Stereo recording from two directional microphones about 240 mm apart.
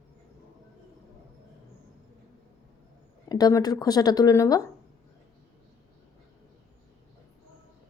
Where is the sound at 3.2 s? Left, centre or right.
Centre.